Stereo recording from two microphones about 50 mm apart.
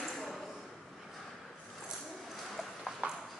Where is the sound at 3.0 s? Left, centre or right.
Right.